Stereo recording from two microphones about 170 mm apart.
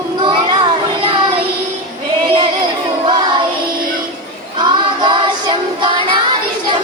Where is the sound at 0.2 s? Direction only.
30° right (ahead or behind).